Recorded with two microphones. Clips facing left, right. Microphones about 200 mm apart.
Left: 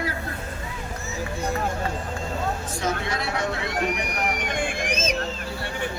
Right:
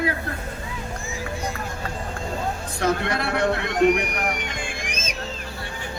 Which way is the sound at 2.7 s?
60° right (ahead or behind).